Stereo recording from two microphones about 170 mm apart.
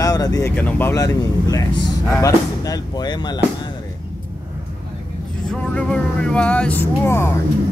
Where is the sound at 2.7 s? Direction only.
25° left (ahead or behind).